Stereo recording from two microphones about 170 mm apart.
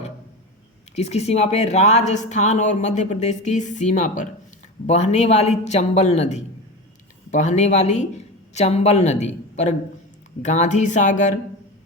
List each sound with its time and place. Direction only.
0.9 s speech: 40° left (ahead or behind)